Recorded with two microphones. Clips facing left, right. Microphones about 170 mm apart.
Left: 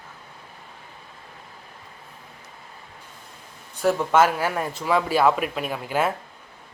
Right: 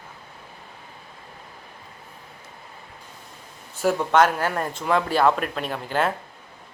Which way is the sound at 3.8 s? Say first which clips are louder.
Even; centre (ahead or behind).